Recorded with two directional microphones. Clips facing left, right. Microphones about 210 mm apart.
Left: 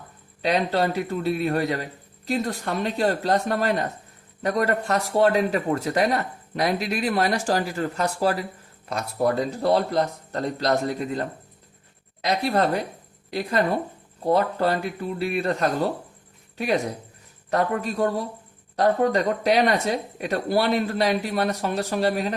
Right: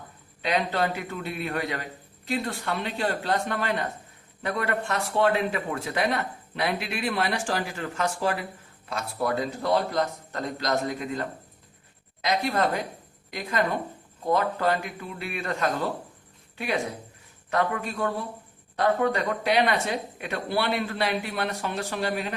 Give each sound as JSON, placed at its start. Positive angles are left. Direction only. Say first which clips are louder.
{"t": 0.4, "sound": "speech", "louder": "left 4 dB", "side_deg": 40}
{"t": 12.5, "sound": "speech", "louder": "left 3 dB", "side_deg": 35}